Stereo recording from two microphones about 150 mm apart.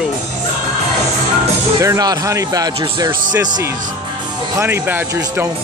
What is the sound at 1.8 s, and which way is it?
Speech, 25° right (ahead or behind).